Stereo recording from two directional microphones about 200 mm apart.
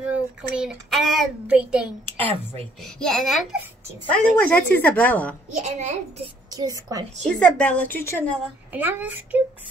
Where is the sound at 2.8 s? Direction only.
Centre (ahead or behind).